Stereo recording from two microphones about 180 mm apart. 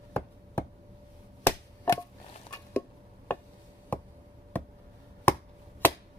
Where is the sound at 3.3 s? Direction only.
10° left (ahead or behind).